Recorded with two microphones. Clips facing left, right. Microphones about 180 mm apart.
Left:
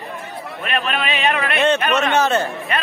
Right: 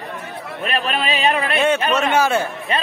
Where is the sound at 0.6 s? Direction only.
35° right (ahead or behind).